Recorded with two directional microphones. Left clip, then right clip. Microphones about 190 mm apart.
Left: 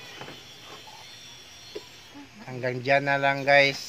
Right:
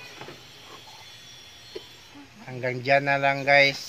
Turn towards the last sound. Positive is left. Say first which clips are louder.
# right 1 dB
turn(degrees=-5)  # may be behind; listen again after turning